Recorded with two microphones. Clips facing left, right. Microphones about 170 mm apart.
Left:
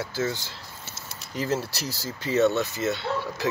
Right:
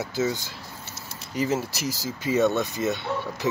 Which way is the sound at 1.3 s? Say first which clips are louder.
Right 2 dB; 5° right (ahead or behind).